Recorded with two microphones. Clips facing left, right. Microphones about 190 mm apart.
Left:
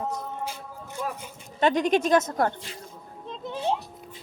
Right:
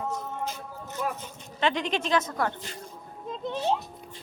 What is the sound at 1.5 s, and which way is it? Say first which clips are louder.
Speech: left 6 dB; 45° left (ahead or behind).